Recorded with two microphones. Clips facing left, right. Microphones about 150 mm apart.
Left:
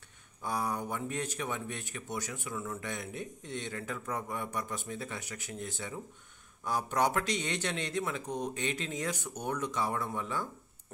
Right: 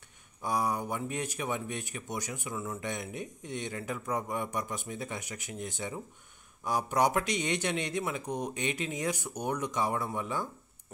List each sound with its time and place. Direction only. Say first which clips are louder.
0.4 s speech: right 3 dB; 15° right (ahead or behind)